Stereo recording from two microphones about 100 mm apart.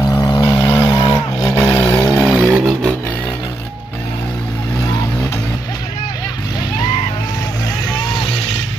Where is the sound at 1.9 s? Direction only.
40° left (ahead or behind).